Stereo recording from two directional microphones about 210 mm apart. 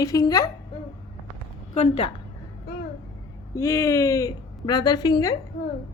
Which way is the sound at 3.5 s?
15° left (ahead or behind).